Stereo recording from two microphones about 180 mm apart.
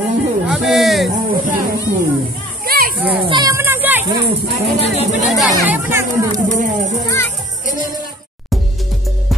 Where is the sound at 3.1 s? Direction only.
25° right (ahead or behind).